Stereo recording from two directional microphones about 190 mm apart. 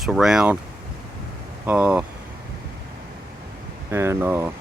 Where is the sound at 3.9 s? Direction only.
10° right (ahead or behind).